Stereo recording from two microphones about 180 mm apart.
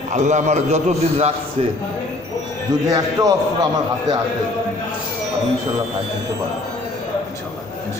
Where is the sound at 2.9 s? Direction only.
20° right (ahead or behind).